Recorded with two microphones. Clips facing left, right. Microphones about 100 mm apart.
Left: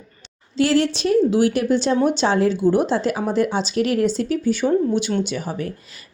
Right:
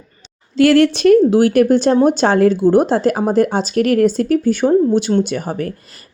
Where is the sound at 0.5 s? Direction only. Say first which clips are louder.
Right 7 dB; 60° right (ahead or behind).